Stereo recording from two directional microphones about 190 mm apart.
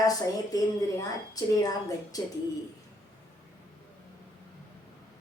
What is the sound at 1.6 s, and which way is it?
Speech, 20° left (ahead or behind).